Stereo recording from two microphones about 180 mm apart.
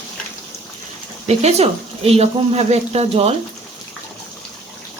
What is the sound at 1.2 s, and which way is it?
Speech, 35° right (ahead or behind).